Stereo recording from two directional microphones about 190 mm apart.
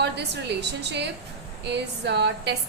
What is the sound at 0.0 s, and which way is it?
A woman's voice, 65° right (ahead or behind).